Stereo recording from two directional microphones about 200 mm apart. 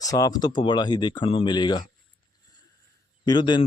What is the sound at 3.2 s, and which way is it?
Speech, 20° left (ahead or behind).